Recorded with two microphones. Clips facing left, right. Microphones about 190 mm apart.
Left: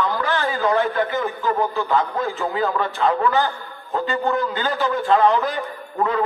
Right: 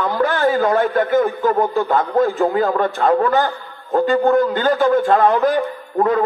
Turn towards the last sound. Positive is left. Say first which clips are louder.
# right 5 dB
turn(degrees=-50)  # may be behind; listen again after turning